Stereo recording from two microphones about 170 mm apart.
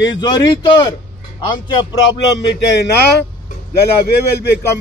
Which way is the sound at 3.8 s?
75° left (ahead or behind).